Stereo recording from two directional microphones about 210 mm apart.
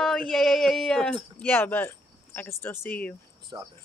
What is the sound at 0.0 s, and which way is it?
Speech, centre (ahead or behind).